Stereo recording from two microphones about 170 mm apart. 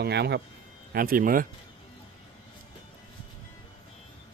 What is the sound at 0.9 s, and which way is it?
Speech, 60° right (ahead or behind).